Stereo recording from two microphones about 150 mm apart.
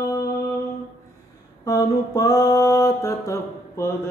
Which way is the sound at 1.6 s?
25° left (ahead or behind).